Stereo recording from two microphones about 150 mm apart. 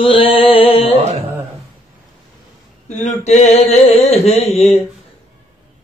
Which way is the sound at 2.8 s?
50° left (ahead or behind).